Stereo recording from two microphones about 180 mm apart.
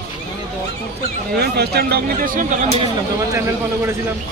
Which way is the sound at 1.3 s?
65° right (ahead or behind).